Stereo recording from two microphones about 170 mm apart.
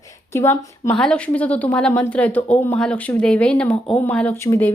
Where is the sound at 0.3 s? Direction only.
15° left (ahead or behind).